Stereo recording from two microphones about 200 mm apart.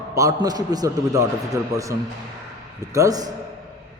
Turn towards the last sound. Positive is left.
turn(degrees=-20)  # may be behind; listen again after turning